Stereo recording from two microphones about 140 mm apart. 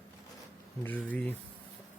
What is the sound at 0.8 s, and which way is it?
Speech, 10° left (ahead or behind).